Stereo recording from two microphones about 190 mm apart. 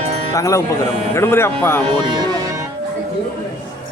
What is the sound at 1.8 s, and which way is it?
Music, 25° right (ahead or behind).